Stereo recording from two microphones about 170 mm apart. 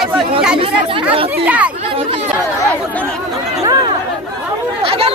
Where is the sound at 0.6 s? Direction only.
30° right (ahead or behind).